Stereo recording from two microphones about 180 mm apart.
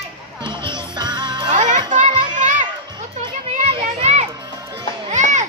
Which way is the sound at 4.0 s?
40° right (ahead or behind).